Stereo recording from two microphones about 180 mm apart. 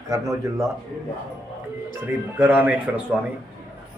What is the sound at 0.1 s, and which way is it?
Speech, 20° right (ahead or behind).